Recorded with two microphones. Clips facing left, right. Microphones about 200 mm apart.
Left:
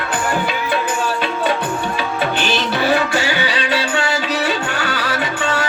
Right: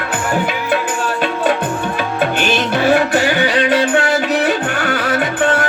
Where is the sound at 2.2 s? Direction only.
50° right (ahead or behind).